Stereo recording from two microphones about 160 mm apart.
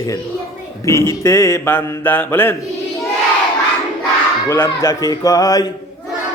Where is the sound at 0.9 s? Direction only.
20° left (ahead or behind).